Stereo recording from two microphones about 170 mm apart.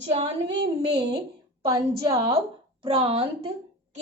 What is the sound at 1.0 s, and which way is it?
Speech, 75° right (ahead or behind).